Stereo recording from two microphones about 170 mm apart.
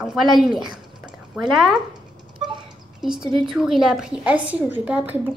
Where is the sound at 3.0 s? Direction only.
5° right (ahead or behind).